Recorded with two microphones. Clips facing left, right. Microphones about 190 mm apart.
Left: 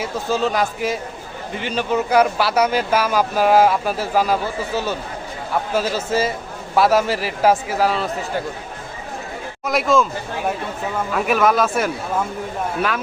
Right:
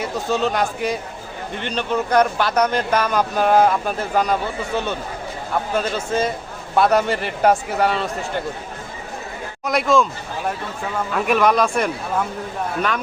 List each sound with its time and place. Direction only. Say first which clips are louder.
0.0 s speech: even; centre (ahead or behind)
9.6 s speech: even; centre (ahead or behind)
11.1 s speech: even; centre (ahead or behind)